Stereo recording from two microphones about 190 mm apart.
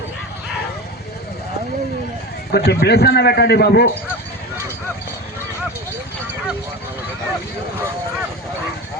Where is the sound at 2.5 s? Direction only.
60° left (ahead or behind).